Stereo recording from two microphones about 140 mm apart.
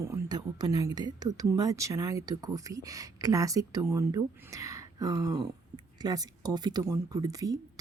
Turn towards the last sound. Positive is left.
turn(degrees=-25)  # may be behind; listen again after turning